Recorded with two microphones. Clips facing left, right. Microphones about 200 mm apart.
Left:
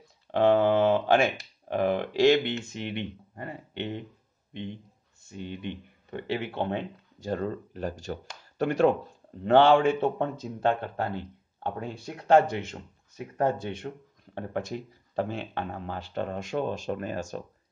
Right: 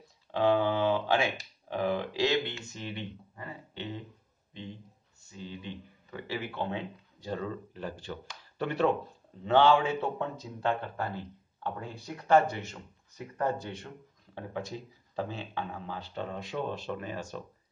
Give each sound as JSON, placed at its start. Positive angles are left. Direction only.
{"t": 0.3, "sound": "speech", "side_deg": 50}
{"t": 5.3, "sound": "speech", "side_deg": 65}
{"t": 10.0, "sound": "speech", "side_deg": 60}
{"t": 13.9, "sound": "speech", "side_deg": 40}
{"t": 15.1, "sound": "speech", "side_deg": 60}